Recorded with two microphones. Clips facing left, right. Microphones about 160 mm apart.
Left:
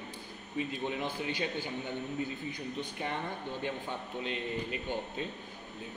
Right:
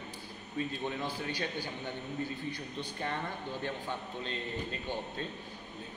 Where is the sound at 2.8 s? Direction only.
15° left (ahead or behind).